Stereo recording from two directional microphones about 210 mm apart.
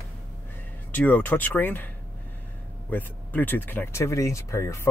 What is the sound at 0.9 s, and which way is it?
Speech, 10° left (ahead or behind).